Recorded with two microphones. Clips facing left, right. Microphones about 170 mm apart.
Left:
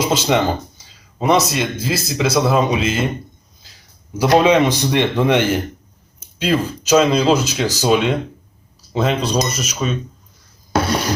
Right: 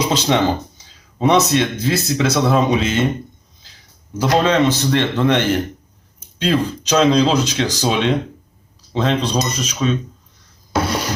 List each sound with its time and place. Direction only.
0.1 s speech: 5° left (ahead or behind)
4.2 s speech: 10° left (ahead or behind)